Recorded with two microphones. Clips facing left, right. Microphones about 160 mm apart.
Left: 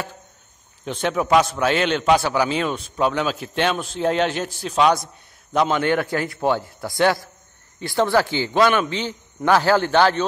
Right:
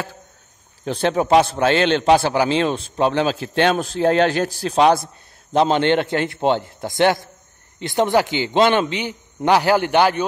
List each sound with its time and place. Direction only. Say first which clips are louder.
0.8 s a man's voice: right 3 dB; 35° right (ahead or behind); by 10.2 s 15° right (ahead or behind)